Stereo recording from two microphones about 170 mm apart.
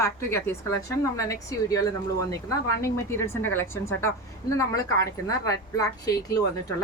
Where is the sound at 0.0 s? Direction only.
15° left (ahead or behind).